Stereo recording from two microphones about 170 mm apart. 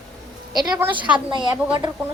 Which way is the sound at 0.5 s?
25° right (ahead or behind).